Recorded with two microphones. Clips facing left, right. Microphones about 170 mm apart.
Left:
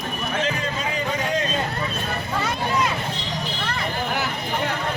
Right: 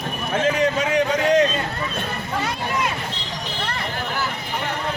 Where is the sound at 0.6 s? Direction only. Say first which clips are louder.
Right 8 dB; 75° right (ahead or behind).